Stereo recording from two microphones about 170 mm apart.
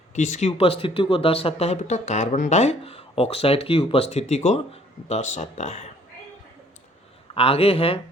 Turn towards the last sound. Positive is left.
turn(degrees=35)  # may be behind; listen again after turning